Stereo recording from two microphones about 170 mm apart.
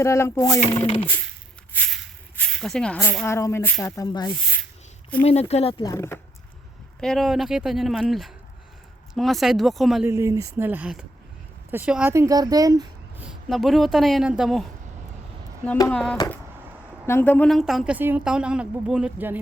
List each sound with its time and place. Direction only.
0.0 s speech: 15° left (ahead or behind)
0.7 s speech: 30° left (ahead or behind)
1.7 s speech: 5° left (ahead or behind); by 4.4 s 25° left (ahead or behind)
5.2 s speech: 40° left (ahead or behind)
5.8 s speech: 20° left (ahead or behind)
7.0 s a woman's voice: centre (ahead or behind)
10.1 s speech: 15° right (ahead or behind)
12.1 s speech: 20° right (ahead or behind)
13.1 s a woman's voice: 5° right (ahead or behind)
15.9 s a woman's voice: 5° left (ahead or behind)